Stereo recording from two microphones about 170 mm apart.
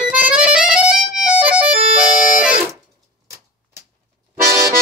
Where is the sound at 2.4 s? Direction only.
5° right (ahead or behind).